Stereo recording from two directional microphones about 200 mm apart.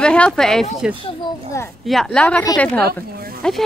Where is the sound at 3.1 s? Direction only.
50° right (ahead or behind).